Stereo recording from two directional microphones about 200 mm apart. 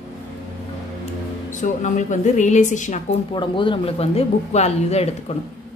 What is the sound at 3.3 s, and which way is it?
Speech, 25° left (ahead or behind).